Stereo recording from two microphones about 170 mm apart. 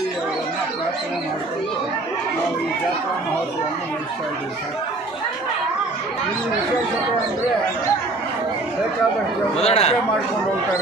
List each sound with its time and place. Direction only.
9.6 s a man's voice: 35° left (ahead or behind)